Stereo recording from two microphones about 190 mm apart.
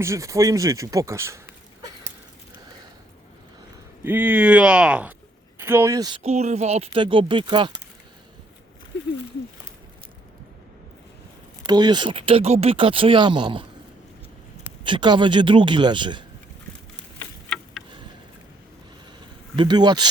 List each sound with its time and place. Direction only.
0.0 s speech: 15° right (ahead or behind)
4.0 s speech: 10° right (ahead or behind); by 7.8 s 25° right (ahead or behind)
11.6 s speech: 20° right (ahead or behind)
14.8 s speech: 25° right (ahead or behind)
17.2 s insect: centre (ahead or behind)
19.5 s speech: 25° right (ahead or behind)